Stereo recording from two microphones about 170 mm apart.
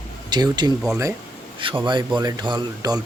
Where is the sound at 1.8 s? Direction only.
25° right (ahead or behind).